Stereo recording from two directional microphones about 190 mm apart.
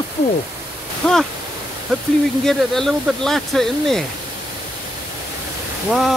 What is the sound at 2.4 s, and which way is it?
Speech, centre (ahead or behind).